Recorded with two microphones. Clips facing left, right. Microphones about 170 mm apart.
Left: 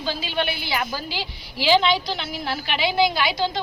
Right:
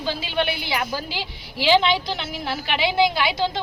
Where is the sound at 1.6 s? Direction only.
15° right (ahead or behind).